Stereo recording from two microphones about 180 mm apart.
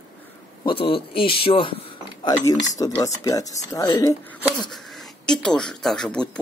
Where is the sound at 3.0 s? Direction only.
20° left (ahead or behind).